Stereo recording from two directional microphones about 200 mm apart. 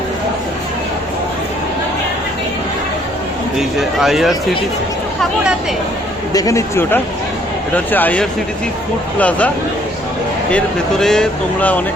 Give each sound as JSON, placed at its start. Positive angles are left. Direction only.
{"t": 3.6, "sound": "speech", "side_deg": 0}
{"t": 6.3, "sound": "speech", "side_deg": 15}
{"t": 10.5, "sound": "speech", "side_deg": 0}